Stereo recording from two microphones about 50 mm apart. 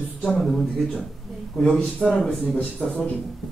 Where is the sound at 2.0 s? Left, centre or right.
Centre.